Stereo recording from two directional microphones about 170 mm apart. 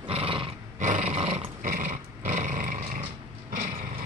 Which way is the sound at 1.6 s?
50° right (ahead or behind).